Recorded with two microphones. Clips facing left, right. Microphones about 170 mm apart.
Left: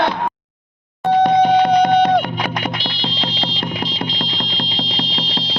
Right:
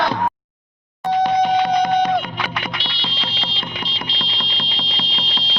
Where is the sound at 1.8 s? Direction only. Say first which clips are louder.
Left 4 dB; 65° left (ahead or behind).